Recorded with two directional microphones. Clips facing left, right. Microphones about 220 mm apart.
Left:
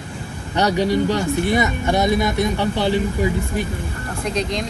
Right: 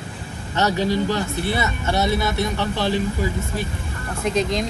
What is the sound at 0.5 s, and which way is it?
Speech, 15° left (ahead or behind).